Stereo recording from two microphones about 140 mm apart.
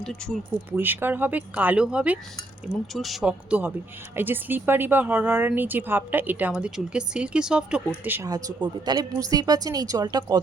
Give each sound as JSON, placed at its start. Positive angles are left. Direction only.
{"t": 0.0, "sound": "speech", "side_deg": 5}
{"t": 0.7, "sound": "speech", "side_deg": -15}
{"t": 8.3, "sound": "speech", "side_deg": -25}